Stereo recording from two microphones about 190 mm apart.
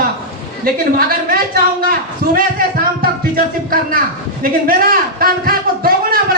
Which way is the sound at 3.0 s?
50° right (ahead or behind).